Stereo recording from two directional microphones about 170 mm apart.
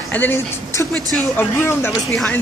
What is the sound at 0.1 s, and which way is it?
Speech, 10° left (ahead or behind).